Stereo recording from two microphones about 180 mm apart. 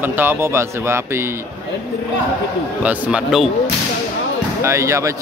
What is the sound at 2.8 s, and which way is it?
Speech, 5° right (ahead or behind).